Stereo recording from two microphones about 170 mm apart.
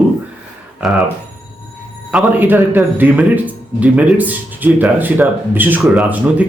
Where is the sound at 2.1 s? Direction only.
10° right (ahead or behind).